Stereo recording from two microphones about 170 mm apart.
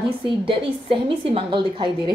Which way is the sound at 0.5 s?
30° right (ahead or behind).